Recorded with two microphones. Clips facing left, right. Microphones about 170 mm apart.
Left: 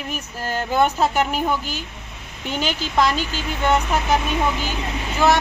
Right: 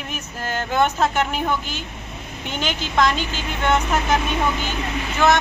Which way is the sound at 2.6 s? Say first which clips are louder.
Right 1 dB; 40° left (ahead or behind).